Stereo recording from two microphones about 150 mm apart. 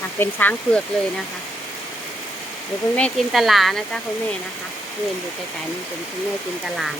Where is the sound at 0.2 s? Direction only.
10° left (ahead or behind).